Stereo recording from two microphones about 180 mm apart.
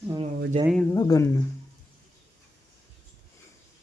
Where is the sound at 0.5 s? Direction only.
30° right (ahead or behind).